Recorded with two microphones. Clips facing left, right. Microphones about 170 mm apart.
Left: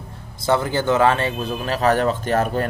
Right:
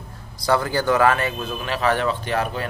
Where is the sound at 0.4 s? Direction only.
20° left (ahead or behind).